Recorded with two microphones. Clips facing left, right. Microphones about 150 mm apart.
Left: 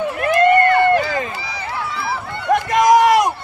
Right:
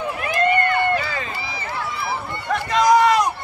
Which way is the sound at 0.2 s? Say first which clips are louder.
Left 7 dB; 55° left (ahead or behind).